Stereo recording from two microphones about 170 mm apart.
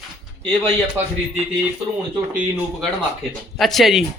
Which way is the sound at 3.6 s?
Centre (ahead or behind).